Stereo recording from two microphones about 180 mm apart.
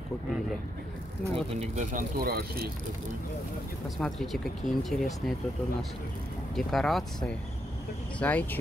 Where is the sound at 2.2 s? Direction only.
60° right (ahead or behind).